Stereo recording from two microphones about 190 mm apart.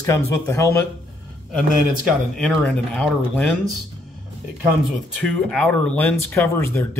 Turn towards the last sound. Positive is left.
turn(degrees=10)  # may be behind; listen again after turning